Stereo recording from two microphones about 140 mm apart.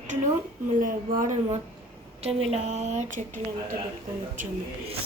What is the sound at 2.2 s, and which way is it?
Speech, 50° right (ahead or behind).